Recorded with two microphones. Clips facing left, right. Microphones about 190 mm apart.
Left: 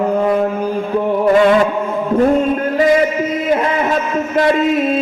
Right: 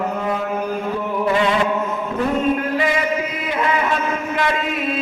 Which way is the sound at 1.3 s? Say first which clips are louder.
Left 8 dB; 45° left (ahead or behind).